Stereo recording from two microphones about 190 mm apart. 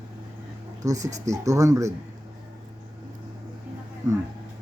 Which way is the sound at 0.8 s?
20° right (ahead or behind).